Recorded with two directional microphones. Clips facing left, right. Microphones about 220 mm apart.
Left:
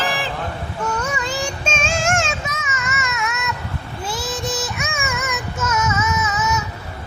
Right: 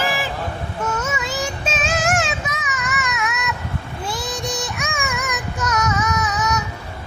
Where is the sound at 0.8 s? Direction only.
5° right (ahead or behind).